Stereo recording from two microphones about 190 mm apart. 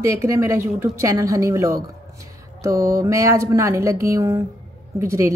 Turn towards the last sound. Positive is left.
turn(degrees=-15)  # may be behind; listen again after turning